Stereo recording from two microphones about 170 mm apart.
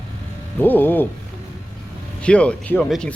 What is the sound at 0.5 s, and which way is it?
Speech, 10° left (ahead or behind).